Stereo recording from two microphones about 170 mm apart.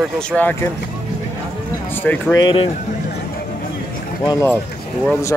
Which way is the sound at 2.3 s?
30° left (ahead or behind).